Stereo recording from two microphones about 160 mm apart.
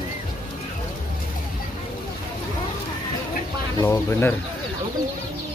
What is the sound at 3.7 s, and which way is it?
Speech, 20° left (ahead or behind).